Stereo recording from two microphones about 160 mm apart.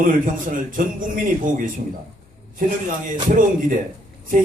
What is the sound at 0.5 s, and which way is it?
A man's voice, 55° right (ahead or behind).